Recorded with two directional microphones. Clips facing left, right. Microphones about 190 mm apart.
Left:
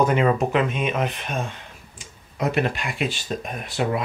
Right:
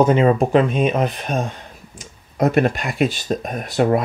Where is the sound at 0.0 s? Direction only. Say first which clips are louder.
Right 5 dB; 30° right (ahead or behind).